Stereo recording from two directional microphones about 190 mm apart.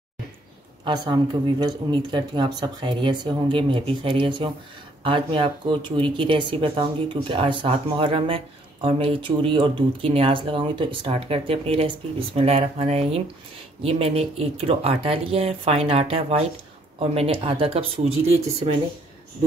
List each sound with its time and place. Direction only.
0.8 s speech: 25° right (ahead or behind)